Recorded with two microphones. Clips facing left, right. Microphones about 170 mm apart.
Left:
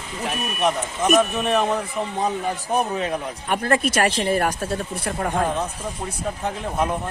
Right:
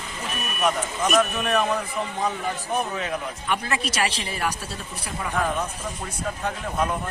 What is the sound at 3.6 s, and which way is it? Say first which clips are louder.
Speech: left 6 dB; 50° left (ahead or behind).